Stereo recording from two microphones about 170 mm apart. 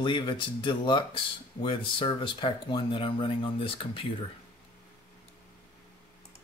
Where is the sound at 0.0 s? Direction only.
30° left (ahead or behind).